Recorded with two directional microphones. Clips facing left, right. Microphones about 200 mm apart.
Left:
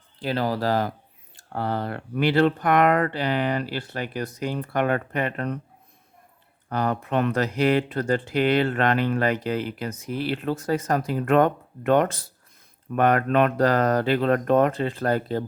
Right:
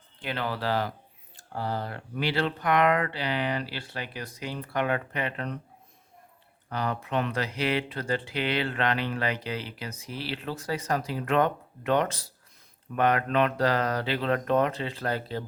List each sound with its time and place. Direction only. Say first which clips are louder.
0.2 s speech: left 7 dB; 35° left (ahead or behind)
1.5 s speech: left 5 dB; 60° left (ahead or behind)
6.7 s speech: left 5 dB; 50° left (ahead or behind)